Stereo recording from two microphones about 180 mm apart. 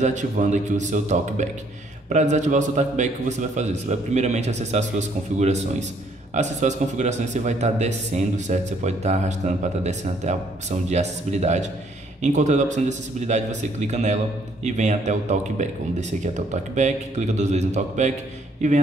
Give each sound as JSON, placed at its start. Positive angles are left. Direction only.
{"t": 0.0, "sound": "a man's voice", "side_deg": -45}